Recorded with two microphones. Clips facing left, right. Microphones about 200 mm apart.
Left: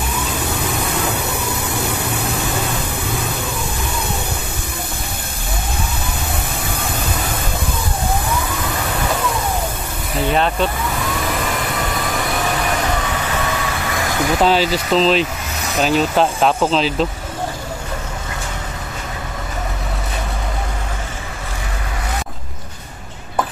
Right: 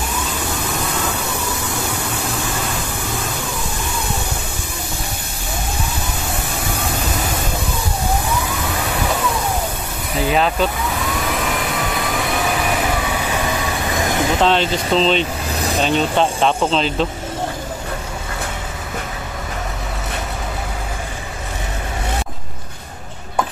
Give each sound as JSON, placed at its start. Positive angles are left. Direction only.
{"t": 0.1, "sound": "vehicle", "side_deg": 60}
{"t": 10.1, "sound": "vehicle", "side_deg": -5}
{"t": 13.2, "sound": "vehicle", "side_deg": -10}
{"t": 14.4, "sound": "speech", "side_deg": 5}
{"t": 15.5, "sound": "vehicle", "side_deg": -35}
{"t": 15.8, "sound": "speech", "side_deg": 5}